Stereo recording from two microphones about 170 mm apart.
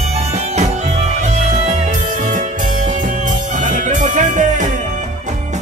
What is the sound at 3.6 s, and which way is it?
Music, 50° right (ahead or behind).